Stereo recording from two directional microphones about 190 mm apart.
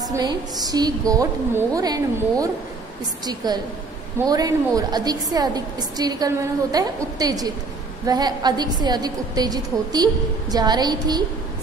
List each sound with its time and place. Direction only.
0.1 s a woman's voice: 20° right (ahead or behind)